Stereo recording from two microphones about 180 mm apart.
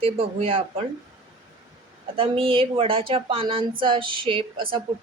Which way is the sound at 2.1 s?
30° right (ahead or behind).